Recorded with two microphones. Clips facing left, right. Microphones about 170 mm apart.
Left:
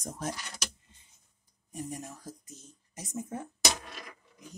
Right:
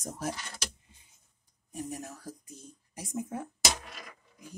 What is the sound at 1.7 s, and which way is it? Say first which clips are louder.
Speech: right 1 dB; 10° right (ahead or behind).